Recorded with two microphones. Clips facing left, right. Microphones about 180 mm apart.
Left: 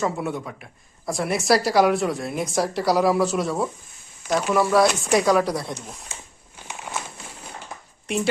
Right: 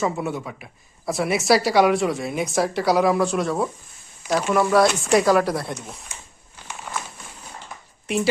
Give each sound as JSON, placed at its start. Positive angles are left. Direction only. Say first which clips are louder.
{"t": 0.0, "sound": "a woman's voice", "louder": "right 1 dB", "side_deg": 0}
{"t": 6.9, "sound": "a sound", "louder": "even", "side_deg": 10}
{"t": 8.0, "sound": "speech", "louder": "right 2 dB", "side_deg": -5}